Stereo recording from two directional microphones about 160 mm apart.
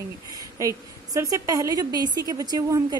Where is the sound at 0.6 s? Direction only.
20° right (ahead or behind).